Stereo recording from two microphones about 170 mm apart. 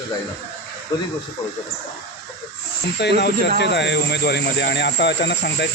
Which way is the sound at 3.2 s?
90° left.